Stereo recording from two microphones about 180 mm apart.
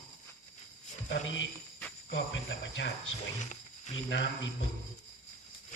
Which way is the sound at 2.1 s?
90° left.